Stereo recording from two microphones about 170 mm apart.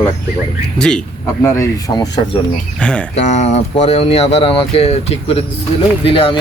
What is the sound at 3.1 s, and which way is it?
Speech, 45° left (ahead or behind).